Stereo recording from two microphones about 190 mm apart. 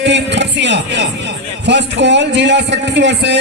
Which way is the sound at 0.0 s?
65° right (ahead or behind).